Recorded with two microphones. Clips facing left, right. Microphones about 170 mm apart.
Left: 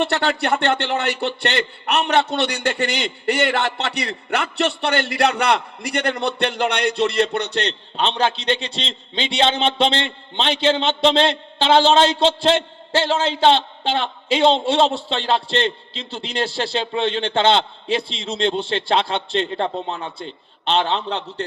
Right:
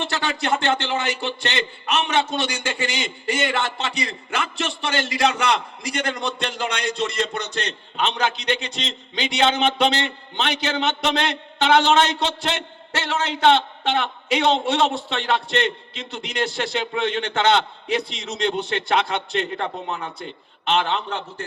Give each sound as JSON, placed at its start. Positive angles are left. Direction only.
{"t": 0.0, "sound": "a man's voice", "side_deg": 60}
{"t": 7.9, "sound": "a man's voice", "side_deg": 30}